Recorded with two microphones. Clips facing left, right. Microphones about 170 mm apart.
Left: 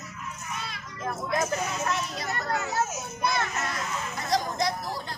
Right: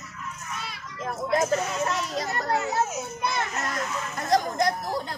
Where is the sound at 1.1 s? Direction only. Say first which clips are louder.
Right 5 dB; 30° right (ahead or behind).